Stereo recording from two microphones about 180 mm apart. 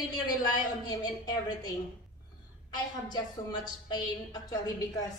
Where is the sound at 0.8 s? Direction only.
20° left (ahead or behind).